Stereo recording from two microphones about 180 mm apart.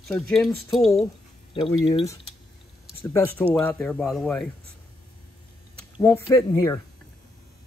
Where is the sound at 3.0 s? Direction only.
10° left (ahead or behind).